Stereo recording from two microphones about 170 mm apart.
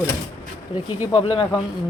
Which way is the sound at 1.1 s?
30° left (ahead or behind).